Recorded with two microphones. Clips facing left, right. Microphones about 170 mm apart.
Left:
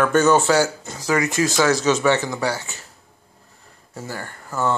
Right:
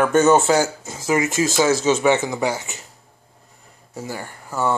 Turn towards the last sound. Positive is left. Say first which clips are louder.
# right 1 dB
turn(degrees=-15)  # may be behind; listen again after turning